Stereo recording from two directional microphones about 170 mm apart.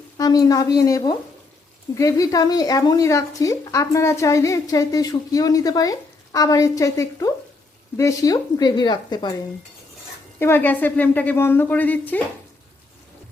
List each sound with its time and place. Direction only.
0.2 s speech: 20° left (ahead or behind)
10.4 s a woman's voice: 10° left (ahead or behind)